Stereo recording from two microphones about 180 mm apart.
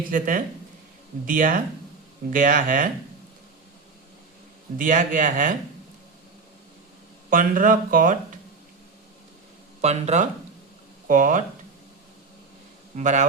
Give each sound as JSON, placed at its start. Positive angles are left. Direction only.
{"t": 0.1, "sound": "speech", "side_deg": -50}
{"t": 4.8, "sound": "speech", "side_deg": -45}
{"t": 7.3, "sound": "speech", "side_deg": -50}
{"t": 9.8, "sound": "speech", "side_deg": -40}
{"t": 13.0, "sound": "speech", "side_deg": -45}